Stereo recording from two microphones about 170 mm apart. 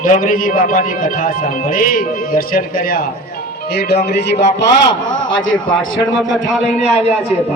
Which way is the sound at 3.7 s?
70° left (ahead or behind).